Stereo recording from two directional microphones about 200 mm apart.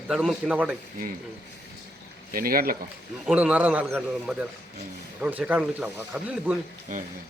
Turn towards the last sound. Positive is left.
turn(degrees=-40)  # may be behind; listen again after turning